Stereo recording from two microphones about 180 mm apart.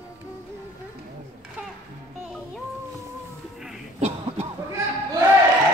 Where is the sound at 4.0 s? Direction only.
35° right (ahead or behind).